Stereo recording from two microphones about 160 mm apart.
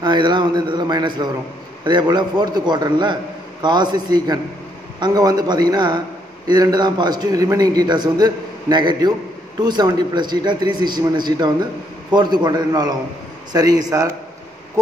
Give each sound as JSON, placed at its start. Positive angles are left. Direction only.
{"t": 0.0, "sound": "a man's voice", "side_deg": -30}